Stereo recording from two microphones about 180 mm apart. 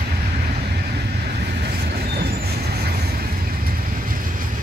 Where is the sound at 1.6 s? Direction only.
60° right (ahead or behind).